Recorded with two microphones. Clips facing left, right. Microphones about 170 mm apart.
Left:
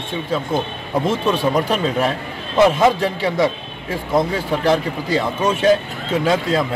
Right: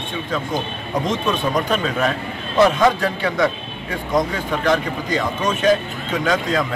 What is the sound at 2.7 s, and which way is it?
A man's voice, 25° left (ahead or behind).